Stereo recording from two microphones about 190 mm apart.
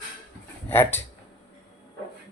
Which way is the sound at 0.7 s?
10° left (ahead or behind).